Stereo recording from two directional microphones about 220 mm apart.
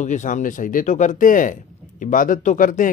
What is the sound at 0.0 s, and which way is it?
Speech, 35° left (ahead or behind).